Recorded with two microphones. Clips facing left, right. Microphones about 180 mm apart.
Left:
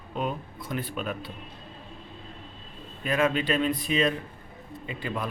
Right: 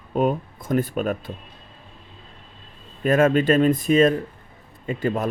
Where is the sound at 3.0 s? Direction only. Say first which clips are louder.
Right 8 dB; 45° right (ahead or behind).